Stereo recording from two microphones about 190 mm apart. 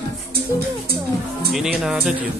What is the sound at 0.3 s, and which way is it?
Speech, 55° right (ahead or behind).